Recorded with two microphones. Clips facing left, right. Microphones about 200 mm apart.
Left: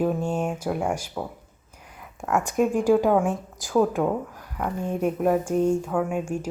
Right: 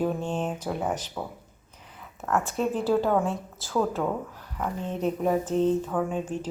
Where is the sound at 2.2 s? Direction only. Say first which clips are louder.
Left 4 dB; 15° left (ahead or behind).